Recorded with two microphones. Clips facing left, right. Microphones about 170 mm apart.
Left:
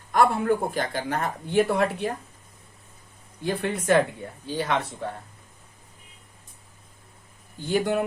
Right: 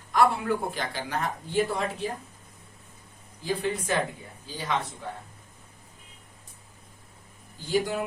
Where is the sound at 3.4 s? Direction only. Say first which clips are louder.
Left 3 dB; 65° left (ahead or behind).